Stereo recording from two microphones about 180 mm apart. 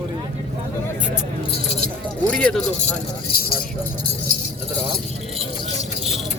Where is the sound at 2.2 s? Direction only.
5° left (ahead or behind).